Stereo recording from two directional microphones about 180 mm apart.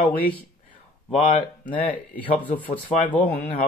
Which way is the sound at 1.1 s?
35° left (ahead or behind).